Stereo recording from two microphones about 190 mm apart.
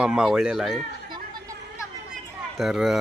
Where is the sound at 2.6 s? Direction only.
Centre (ahead or behind).